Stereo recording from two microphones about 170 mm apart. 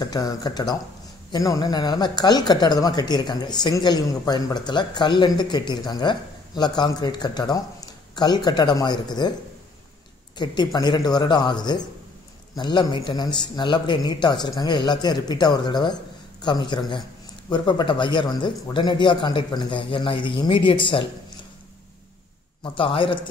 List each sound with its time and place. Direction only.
0.0 s speech: 20° left (ahead or behind)
10.3 s speech: 25° left (ahead or behind)
22.6 s speech: 30° left (ahead or behind)